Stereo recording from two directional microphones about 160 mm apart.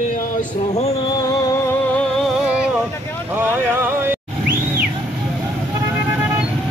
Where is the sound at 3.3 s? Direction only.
15° right (ahead or behind).